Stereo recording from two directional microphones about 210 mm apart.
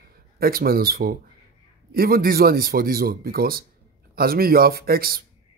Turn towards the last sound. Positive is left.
turn(degrees=-45)  # may be behind; listen again after turning